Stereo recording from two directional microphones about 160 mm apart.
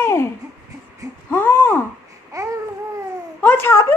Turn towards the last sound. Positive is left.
turn(degrees=15)  # may be behind; listen again after turning